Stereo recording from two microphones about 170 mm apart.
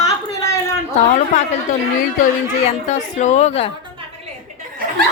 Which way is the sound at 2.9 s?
45° left (ahead or behind).